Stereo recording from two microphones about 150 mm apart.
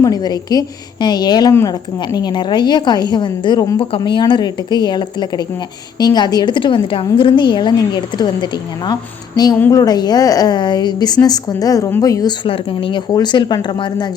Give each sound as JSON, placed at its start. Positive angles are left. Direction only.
{"t": 0.0, "sound": "a woman's voice", "side_deg": 25}
{"t": 12.5, "sound": "a woman's voice", "side_deg": 35}